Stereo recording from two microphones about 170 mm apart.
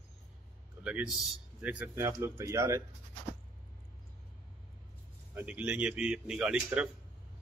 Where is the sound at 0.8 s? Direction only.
5° right (ahead or behind).